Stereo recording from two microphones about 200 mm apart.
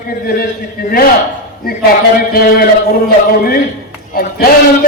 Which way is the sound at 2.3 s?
50° left (ahead or behind).